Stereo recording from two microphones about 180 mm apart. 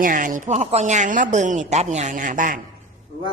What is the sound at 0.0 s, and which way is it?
Speech, 50° right (ahead or behind).